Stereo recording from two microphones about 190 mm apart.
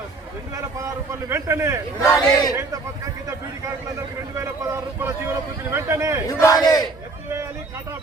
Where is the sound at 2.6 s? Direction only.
15° right (ahead or behind).